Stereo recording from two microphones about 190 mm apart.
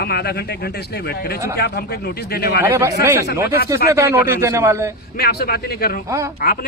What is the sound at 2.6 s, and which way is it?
Speech, 15° right (ahead or behind).